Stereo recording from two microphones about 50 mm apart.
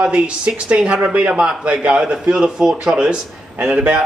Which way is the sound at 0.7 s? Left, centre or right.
Right.